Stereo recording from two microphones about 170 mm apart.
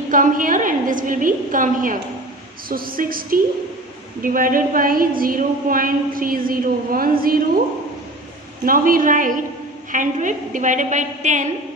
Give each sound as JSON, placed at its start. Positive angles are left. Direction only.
{"t": 0.1, "sound": "a woman's voice", "side_deg": -50}
{"t": 8.6, "sound": "a woman's voice", "side_deg": -55}